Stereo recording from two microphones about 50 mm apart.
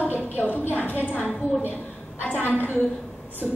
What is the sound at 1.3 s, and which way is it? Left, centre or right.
Speech, centre.